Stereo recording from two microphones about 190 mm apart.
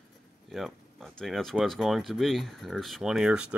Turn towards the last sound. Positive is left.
turn(degrees=-5)  # may be behind; listen again after turning